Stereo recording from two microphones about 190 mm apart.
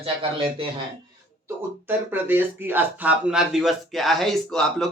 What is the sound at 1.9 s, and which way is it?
Speech, 10° right (ahead or behind).